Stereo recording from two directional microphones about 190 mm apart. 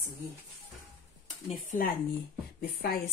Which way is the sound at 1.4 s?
40° left (ahead or behind).